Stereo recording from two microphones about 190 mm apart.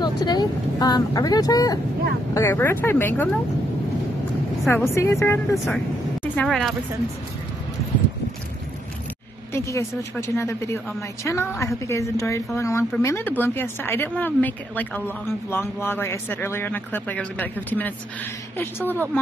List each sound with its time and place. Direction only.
0.0 s speech: 20° left (ahead or behind)
4.6 s speech: 15° left (ahead or behind)
9.5 s speech: 15° left (ahead or behind)